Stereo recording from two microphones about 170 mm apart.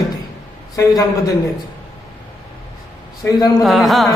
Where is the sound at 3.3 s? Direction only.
20° left (ahead or behind).